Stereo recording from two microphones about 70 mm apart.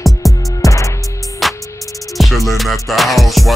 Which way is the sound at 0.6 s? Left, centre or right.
Left.